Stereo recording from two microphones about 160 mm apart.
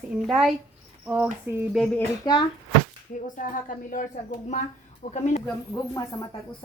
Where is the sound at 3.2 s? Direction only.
55° left (ahead or behind).